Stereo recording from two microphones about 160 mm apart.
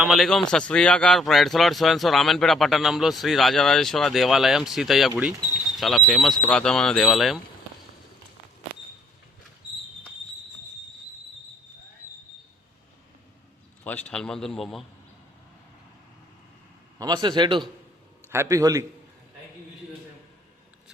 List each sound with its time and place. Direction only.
0.0 s a man's voice: centre (ahead or behind)
13.8 s a man's voice: 10° left (ahead or behind)
17.0 s a man's voice: 30° right (ahead or behind)
18.3 s a man's voice: 15° right (ahead or behind)